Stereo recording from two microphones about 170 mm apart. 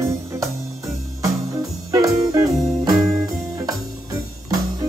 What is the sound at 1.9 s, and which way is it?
Music, 20° right (ahead or behind).